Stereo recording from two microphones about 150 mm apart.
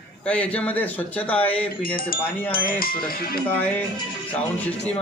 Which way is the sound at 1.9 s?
70° left (ahead or behind).